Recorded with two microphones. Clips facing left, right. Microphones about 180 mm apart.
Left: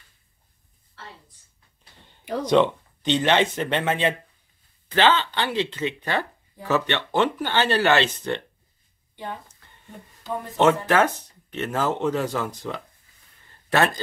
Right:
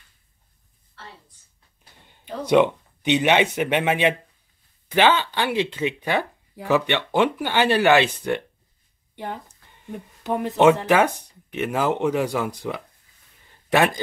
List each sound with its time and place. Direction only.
2.4 s speech: 10° right (ahead or behind)
9.1 s speech: 65° right (ahead or behind)
10.2 s speech: 75° right (ahead or behind)
10.9 s speech: 15° right (ahead or behind)